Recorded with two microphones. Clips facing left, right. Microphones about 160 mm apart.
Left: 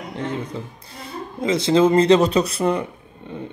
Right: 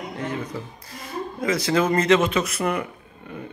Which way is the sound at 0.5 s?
25° left (ahead or behind).